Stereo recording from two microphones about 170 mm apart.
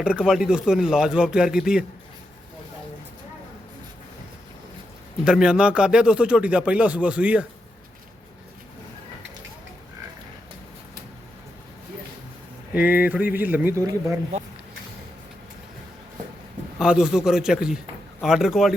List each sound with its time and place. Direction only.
0.0 s speech: 5° right (ahead or behind)
5.2 s speech: 5° right (ahead or behind)
12.7 s speech: 10° right (ahead or behind)
16.7 s speech: 5° right (ahead or behind)